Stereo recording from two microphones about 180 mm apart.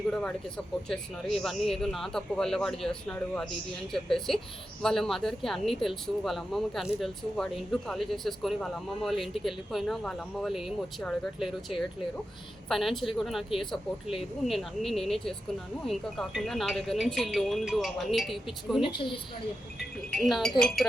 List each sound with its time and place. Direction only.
0.1 s speech: 5° left (ahead or behind)
18.8 s a woman's voice: 25° left (ahead or behind)
20.1 s speech: centre (ahead or behind)